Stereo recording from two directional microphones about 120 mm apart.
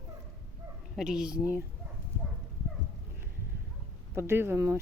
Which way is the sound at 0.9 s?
5° right (ahead or behind).